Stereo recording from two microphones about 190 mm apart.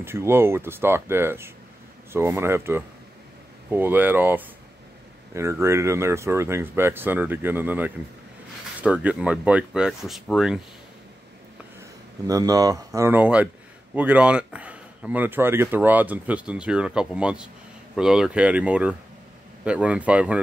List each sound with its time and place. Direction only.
0.0 s speech: 15° right (ahead or behind)
12.3 s speech: 20° right (ahead or behind)